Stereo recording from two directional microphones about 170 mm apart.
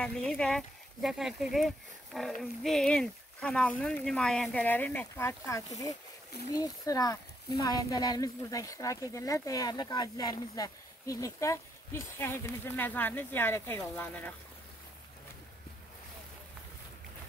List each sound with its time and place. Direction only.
0.0 s speech: 5° left (ahead or behind)